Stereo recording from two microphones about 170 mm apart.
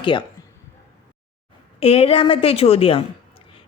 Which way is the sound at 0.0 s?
30° left (ahead or behind).